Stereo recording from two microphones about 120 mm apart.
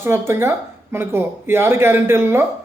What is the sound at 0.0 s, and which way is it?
Speech, 20° right (ahead or behind).